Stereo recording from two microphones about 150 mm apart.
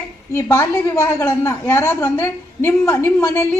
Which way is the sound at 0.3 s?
20° left (ahead or behind).